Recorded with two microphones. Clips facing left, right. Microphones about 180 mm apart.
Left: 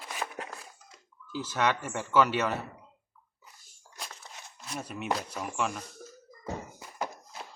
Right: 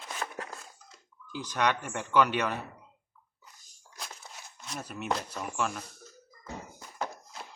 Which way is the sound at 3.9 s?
Centre (ahead or behind).